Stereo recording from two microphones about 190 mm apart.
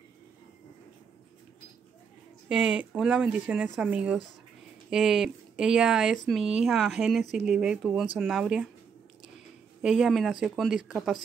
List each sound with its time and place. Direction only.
2.4 s speech: 5° right (ahead or behind)
9.8 s speech: 5° right (ahead or behind)